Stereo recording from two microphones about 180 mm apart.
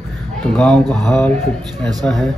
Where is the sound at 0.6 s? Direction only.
5° left (ahead or behind).